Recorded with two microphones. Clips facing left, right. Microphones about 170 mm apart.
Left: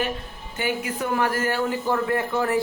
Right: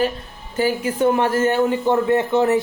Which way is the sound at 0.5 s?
30° right (ahead or behind).